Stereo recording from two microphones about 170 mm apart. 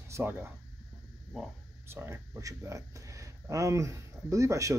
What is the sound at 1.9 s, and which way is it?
Speech, 15° right (ahead or behind).